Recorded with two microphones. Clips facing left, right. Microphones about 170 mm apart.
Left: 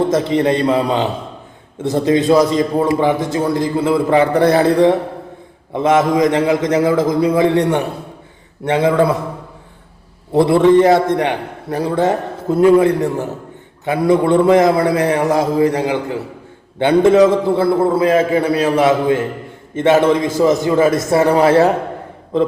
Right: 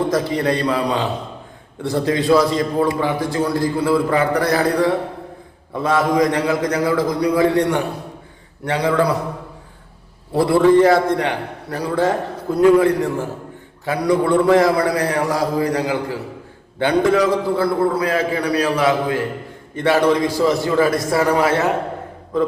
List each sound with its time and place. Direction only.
0.1 s a man's voice: 25° left (ahead or behind)
10.3 s a man's voice: 20° left (ahead or behind)